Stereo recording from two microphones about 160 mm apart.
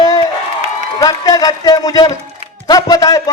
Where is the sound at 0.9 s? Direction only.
25° left (ahead or behind).